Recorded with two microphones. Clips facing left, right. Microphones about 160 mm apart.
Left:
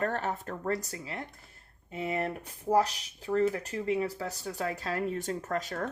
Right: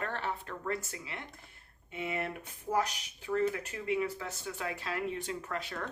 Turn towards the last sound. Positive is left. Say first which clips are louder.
# left 5 dB
turn(degrees=40)  # may be behind; listen again after turning